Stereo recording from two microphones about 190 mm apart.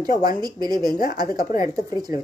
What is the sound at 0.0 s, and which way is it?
Speech, 20° right (ahead or behind).